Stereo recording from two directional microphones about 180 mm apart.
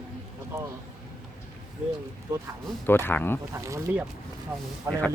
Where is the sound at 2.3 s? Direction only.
15° right (ahead or behind).